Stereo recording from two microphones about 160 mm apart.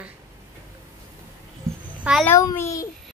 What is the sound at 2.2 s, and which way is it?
Speech, 15° left (ahead or behind).